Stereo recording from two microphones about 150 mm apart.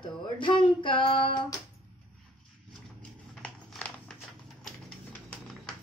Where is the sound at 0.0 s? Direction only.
35° left (ahead or behind).